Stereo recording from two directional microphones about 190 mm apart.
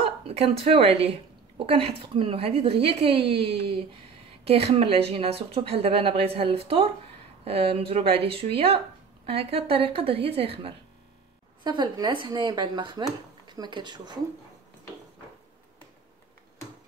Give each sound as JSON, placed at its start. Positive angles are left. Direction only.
{"t": 0.0, "sound": "a woman's voice", "side_deg": -30}